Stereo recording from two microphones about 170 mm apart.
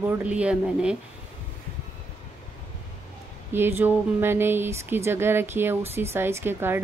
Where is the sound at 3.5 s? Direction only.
10° right (ahead or behind).